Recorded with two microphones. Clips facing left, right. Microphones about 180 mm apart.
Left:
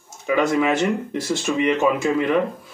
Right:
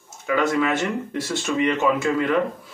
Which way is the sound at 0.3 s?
15° left (ahead or behind).